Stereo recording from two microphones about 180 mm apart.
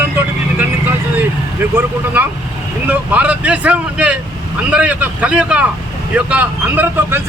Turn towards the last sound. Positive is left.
turn(degrees=-10)  # may be behind; listen again after turning